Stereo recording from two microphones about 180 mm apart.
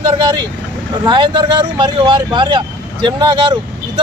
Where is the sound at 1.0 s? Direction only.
25° right (ahead or behind).